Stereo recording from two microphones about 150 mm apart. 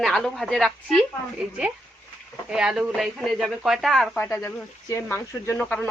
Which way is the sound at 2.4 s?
5° right (ahead or behind).